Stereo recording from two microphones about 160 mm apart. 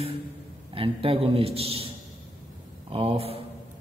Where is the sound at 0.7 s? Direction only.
35° right (ahead or behind).